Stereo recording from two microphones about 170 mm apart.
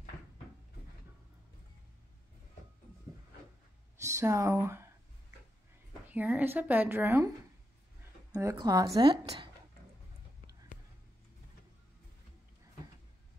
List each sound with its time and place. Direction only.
4.0 s speech: 15° right (ahead or behind)
6.0 s speech: 10° right (ahead or behind)
8.3 s speech: 20° right (ahead or behind)